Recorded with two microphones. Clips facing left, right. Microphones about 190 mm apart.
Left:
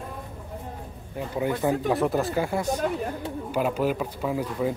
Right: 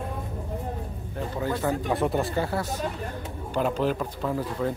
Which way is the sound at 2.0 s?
Centre (ahead or behind).